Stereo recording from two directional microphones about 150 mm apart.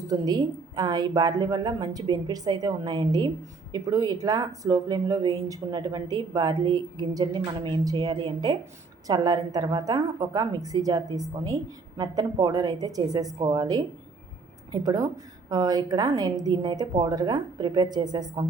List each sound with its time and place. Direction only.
0.1 s speech: 25° right (ahead or behind)